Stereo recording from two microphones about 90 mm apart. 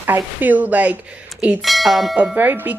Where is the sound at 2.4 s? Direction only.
20° right (ahead or behind).